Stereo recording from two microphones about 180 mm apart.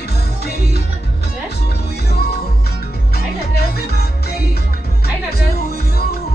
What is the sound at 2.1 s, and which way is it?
Music, 65° left (ahead or behind).